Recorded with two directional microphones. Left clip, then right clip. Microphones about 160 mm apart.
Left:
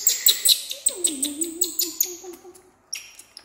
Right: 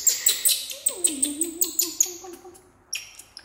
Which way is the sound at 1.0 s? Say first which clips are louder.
Even; 10° left (ahead or behind).